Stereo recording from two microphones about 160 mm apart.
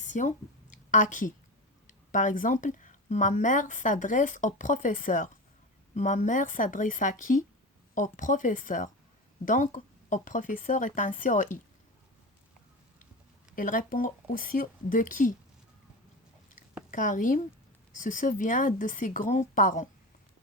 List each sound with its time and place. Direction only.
0.0 s a sound: 50° left (ahead or behind)
2.1 s speech: 55° left (ahead or behind)
13.6 s speech: 60° left (ahead or behind)
16.9 s speech: 55° left (ahead or behind)